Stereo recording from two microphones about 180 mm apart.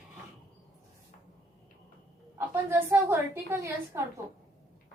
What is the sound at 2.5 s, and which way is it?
A woman's voice, 15° right (ahead or behind).